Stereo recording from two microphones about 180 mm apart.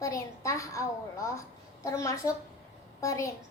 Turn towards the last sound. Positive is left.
turn(degrees=20)  # may be behind; listen again after turning